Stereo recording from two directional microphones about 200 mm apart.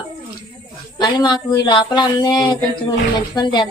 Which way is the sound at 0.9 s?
20° left (ahead or behind).